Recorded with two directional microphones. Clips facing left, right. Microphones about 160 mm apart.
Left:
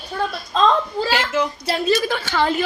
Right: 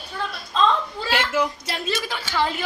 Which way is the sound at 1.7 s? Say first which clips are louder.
Left 8 dB; 40° left (ahead or behind).